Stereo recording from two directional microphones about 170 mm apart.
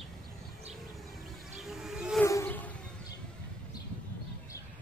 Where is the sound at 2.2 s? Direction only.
15° left (ahead or behind).